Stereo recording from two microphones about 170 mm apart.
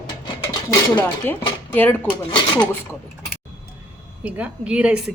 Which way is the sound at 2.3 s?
25° left (ahead or behind).